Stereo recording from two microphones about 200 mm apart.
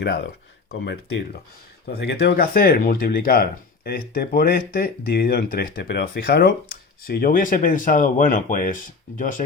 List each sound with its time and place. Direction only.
0.0 s speech: 60° left (ahead or behind); by 9.4 s 40° left (ahead or behind)